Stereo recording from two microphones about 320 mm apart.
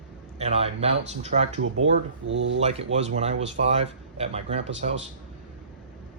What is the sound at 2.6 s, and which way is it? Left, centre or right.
Speech, centre.